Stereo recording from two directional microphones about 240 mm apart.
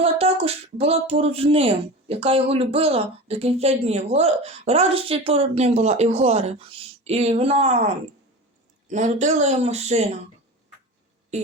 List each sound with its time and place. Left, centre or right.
0.0 s speech: right
8.9 s speech: right